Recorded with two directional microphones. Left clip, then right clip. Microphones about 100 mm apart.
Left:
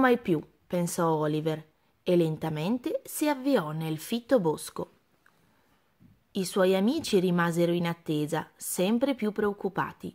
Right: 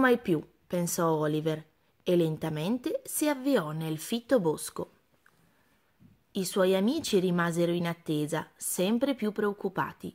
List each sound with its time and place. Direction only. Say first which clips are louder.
0.0 s a woman's voice: left 1 dB; 5° left (ahead or behind)
6.3 s a woman's voice: left 1 dB; 10° left (ahead or behind)